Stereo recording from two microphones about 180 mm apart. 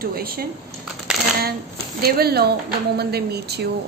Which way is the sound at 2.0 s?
60° right (ahead or behind).